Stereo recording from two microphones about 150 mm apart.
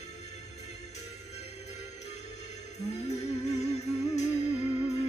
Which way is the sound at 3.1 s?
50° left (ahead or behind).